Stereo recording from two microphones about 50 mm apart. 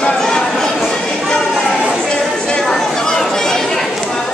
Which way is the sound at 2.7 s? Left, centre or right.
Centre.